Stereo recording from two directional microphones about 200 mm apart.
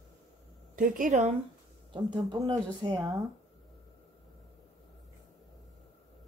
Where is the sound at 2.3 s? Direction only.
20° right (ahead or behind).